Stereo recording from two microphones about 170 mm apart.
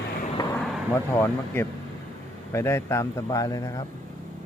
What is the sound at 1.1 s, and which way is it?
Speech, 15° left (ahead or behind).